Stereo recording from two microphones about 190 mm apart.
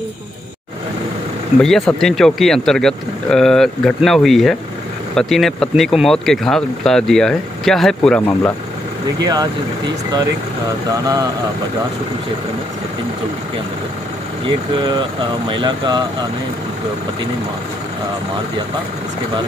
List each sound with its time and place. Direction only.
1.6 s speech: centre (ahead or behind)
9.2 s speech: 20° right (ahead or behind)
10.9 s speech: 20° right (ahead or behind)
14.9 s speech: 25° right (ahead or behind)